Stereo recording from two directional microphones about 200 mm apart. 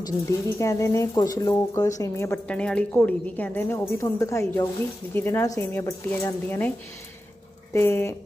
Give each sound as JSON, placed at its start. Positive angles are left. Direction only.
{"t": 0.6, "sound": "a woman's voice", "side_deg": 15}
{"t": 7.7, "sound": "a woman's voice", "side_deg": 10}